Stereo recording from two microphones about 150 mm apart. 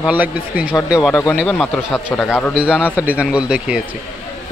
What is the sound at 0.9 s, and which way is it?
Speech, centre (ahead or behind).